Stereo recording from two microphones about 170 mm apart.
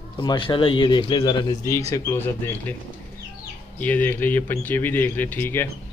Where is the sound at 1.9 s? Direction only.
15° left (ahead or behind).